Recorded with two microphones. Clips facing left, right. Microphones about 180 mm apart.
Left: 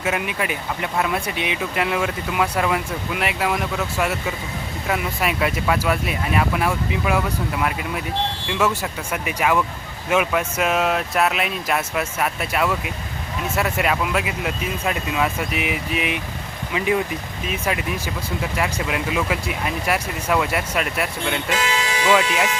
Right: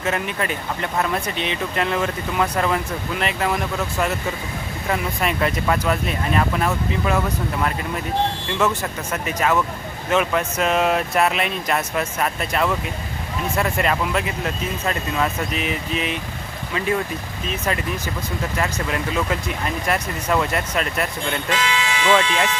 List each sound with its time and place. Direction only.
0.0 s speech: 10° left (ahead or behind)
21.6 s vehicle: 40° left (ahead or behind)
22.1 s speech: 10° left (ahead or behind)